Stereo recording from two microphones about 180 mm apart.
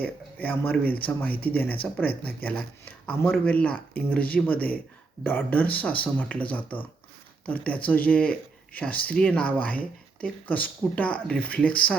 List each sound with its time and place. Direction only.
0.0 s speech: 10° left (ahead or behind)